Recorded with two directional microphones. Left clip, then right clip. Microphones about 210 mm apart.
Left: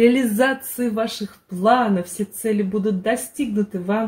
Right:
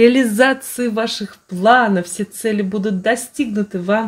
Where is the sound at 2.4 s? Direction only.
45° right (ahead or behind).